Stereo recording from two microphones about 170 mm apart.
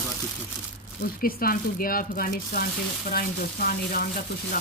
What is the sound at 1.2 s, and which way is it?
Speech, 60° left (ahead or behind).